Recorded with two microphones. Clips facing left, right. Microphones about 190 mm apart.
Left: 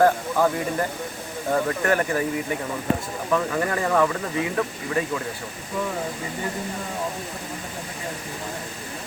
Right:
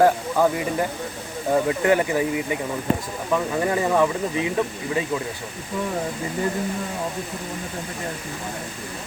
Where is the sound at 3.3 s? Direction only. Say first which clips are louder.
Right 1 dB; 15° right (ahead or behind).